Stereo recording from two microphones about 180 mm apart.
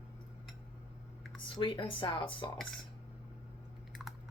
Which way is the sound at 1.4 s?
30° left (ahead or behind).